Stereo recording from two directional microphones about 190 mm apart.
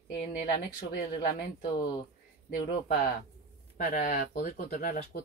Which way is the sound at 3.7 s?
40° left (ahead or behind).